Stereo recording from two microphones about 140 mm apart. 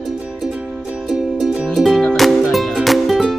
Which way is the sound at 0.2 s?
5° right (ahead or behind).